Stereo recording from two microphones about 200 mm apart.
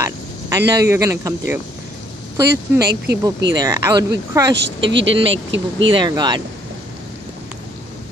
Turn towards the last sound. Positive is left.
turn(degrees=-20)  # may be behind; listen again after turning